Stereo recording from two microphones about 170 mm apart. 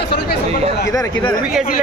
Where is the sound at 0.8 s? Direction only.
20° left (ahead or behind).